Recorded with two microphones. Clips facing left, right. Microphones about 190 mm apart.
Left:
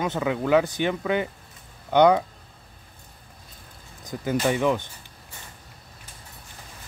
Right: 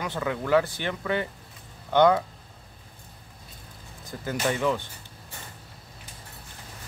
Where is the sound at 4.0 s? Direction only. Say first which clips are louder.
Left 4 dB; 15° left (ahead or behind).